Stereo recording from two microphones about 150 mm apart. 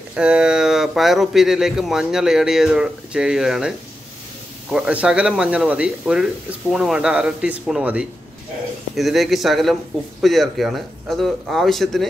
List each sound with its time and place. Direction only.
0.1 s speech: 5° right (ahead or behind)